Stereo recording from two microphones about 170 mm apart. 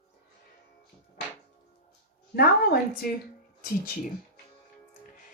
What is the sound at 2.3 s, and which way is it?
Speech, 65° left (ahead or behind).